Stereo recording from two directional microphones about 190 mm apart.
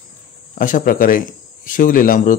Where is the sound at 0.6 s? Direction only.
45° left (ahead or behind).